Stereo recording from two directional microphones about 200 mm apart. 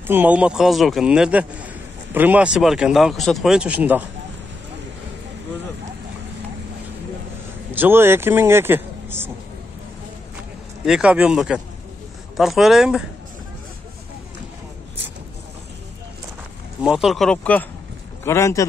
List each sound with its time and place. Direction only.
0.0 s speech: 10° right (ahead or behind)
7.7 s speech: 10° right (ahead or behind)
10.9 s speech: 5° right (ahead or behind)
16.8 s a man's voice: centre (ahead or behind); by 18.7 s 15° left (ahead or behind)